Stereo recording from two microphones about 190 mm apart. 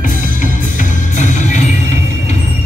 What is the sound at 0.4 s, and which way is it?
Music, 40° left (ahead or behind).